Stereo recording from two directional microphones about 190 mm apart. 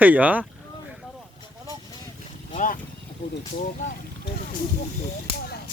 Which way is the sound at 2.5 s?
45° left (ahead or behind).